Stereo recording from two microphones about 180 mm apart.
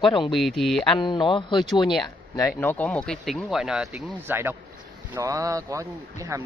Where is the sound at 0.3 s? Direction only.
Centre (ahead or behind).